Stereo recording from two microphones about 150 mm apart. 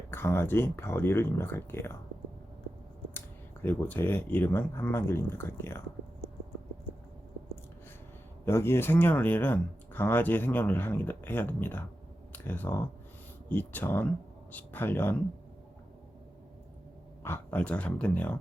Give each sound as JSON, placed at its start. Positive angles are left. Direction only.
{"t": 0.1, "sound": "speech", "side_deg": 15}
{"t": 3.2, "sound": "speech", "side_deg": 15}
{"t": 8.4, "sound": "speech", "side_deg": 15}
{"t": 17.2, "sound": "speech", "side_deg": 15}